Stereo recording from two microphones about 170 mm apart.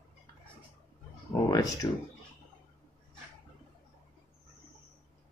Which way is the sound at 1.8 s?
20° left (ahead or behind).